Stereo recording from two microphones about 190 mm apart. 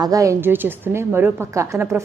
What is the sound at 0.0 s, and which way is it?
A woman's voice, 20° right (ahead or behind).